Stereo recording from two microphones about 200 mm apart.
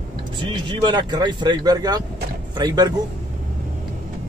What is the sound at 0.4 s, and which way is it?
Speech, 25° right (ahead or behind).